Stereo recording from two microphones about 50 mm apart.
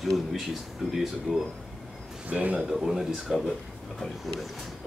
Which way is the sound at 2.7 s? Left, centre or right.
Centre.